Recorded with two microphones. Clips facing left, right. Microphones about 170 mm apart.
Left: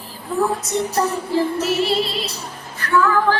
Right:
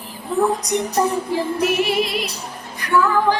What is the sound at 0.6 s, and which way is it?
Female singing, 15° right (ahead or behind).